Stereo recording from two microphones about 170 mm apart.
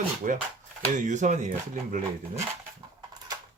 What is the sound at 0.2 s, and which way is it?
Speech, 50° right (ahead or behind).